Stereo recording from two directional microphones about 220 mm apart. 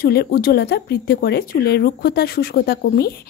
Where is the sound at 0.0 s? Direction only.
45° left (ahead or behind).